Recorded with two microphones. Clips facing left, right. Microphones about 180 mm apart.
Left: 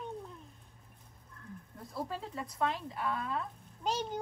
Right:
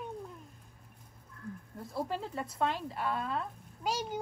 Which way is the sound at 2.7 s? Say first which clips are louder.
Right 2 dB; centre (ahead or behind).